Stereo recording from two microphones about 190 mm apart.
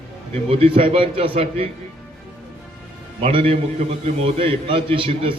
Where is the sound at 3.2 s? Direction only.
30° right (ahead or behind).